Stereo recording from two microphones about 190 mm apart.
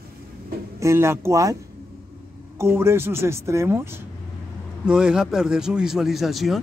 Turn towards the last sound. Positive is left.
turn(degrees=0)  # may be behind; listen again after turning